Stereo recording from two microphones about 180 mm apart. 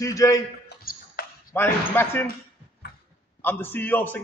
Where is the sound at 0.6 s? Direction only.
65° left (ahead or behind).